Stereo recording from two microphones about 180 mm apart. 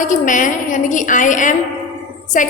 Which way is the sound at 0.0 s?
45° left (ahead or behind).